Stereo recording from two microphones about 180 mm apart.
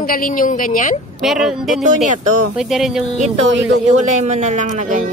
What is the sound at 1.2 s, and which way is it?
Speech, centre (ahead or behind).